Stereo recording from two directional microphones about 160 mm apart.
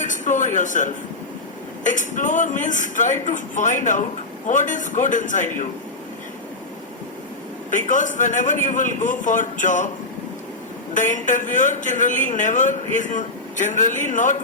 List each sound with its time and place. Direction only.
0.0 s music: 50° left (ahead or behind)
1.8 s a man's voice: 50° left (ahead or behind)
7.7 s a man's voice: 50° left (ahead or behind)
10.9 s a man's voice: 50° left (ahead or behind)